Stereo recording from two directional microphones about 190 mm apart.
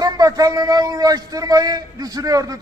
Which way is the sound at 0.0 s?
20° right (ahead or behind).